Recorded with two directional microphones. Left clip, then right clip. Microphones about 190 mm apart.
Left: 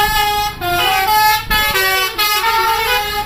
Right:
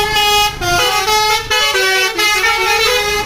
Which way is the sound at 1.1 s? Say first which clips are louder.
Left 1 dB; 40° left (ahead or behind).